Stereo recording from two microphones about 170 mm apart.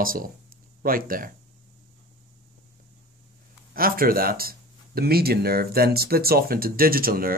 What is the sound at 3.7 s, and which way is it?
Speech, 60° right (ahead or behind).